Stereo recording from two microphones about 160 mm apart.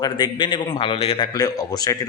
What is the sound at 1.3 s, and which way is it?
Speech, 20° left (ahead or behind).